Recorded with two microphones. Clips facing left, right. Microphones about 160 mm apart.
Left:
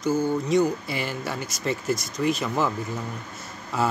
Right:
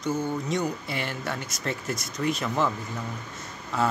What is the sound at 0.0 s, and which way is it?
Speech, centre (ahead or behind).